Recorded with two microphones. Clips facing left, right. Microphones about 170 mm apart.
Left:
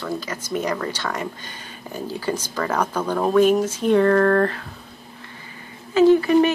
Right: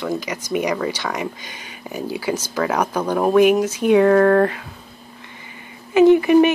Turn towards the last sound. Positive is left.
turn(degrees=-15)  # may be behind; listen again after turning